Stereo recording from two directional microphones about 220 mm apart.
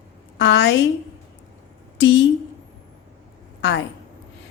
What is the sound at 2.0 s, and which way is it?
Speech, 55° left (ahead or behind).